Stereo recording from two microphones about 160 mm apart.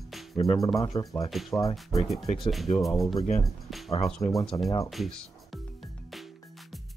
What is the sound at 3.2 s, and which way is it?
Speech, 45° left (ahead or behind).